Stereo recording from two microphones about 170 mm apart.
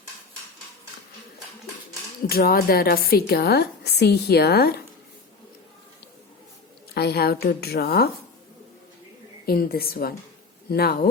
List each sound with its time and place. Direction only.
2.3 s a woman's voice: 60° left (ahead or behind)
6.9 s a woman's voice: 70° left (ahead or behind)
9.5 s a woman's voice: 65° left (ahead or behind)